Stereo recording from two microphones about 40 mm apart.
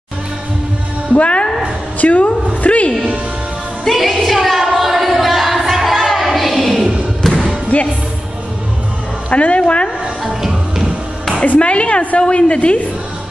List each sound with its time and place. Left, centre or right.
1.1 s speech: left
2.0 s a sound: left
3.8 s music: centre
4.2 s a sound: centre
7.2 s basketball bounce: centre
7.7 s music: left
9.3 s a woman's voice: left
11.6 s a woman's voice: left